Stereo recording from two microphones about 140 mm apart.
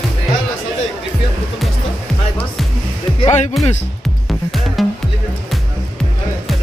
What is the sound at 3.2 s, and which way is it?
Speech, 55° left (ahead or behind).